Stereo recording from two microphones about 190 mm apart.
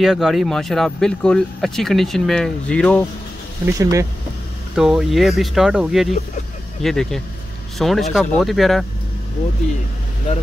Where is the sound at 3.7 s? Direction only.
15° right (ahead or behind).